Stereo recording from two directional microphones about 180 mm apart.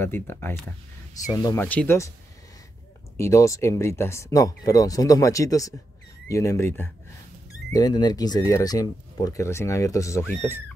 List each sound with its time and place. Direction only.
0.0 s speech: 10° left (ahead or behind)
3.2 s speech: 15° left (ahead or behind)